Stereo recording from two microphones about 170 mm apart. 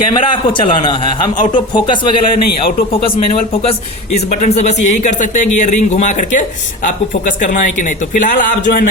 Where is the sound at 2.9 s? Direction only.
35° left (ahead or behind).